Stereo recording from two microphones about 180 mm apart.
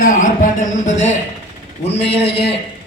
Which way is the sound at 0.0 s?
45° left (ahead or behind).